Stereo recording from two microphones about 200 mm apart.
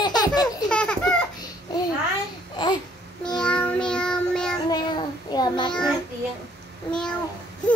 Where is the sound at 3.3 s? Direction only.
5° left (ahead or behind).